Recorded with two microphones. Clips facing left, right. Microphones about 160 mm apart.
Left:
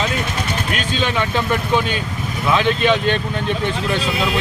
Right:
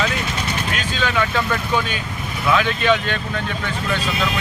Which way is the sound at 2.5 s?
25° left (ahead or behind).